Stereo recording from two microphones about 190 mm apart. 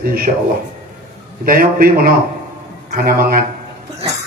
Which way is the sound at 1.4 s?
50° right (ahead or behind).